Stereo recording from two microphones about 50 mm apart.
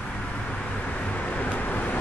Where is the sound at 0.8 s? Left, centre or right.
Left.